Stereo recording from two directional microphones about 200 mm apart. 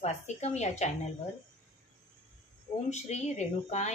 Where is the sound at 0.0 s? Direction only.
35° left (ahead or behind).